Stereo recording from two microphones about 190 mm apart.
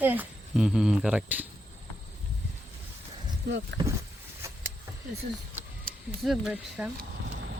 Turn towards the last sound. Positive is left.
turn(degrees=0)  # may be behind; listen again after turning